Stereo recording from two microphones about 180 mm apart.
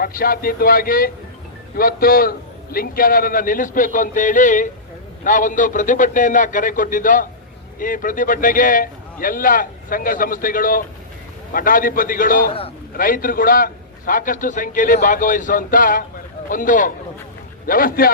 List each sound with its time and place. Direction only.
0.0 s a man's voice: 50° left (ahead or behind)